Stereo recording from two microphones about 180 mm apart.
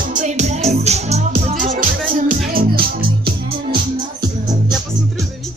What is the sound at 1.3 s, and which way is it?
Music, 50° right (ahead or behind).